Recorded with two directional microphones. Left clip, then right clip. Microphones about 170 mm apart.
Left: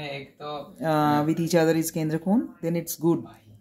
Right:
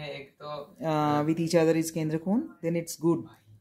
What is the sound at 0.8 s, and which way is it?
Speech, 5° right (ahead or behind).